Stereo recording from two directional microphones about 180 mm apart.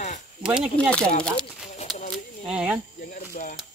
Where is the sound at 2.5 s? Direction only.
5° right (ahead or behind).